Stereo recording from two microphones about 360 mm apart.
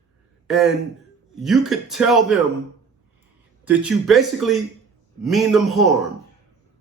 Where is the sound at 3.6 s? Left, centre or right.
Centre.